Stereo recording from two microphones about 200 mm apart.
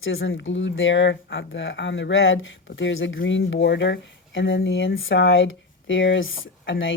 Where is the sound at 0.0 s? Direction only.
75° left (ahead or behind).